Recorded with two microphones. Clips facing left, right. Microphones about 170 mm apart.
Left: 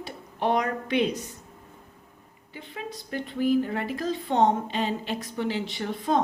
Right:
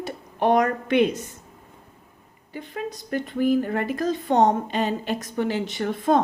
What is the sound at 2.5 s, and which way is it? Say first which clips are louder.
A woman's voice: right 6 dB; 45° right (ahead or behind).